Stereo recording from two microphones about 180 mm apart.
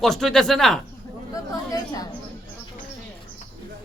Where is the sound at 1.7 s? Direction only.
20° left (ahead or behind).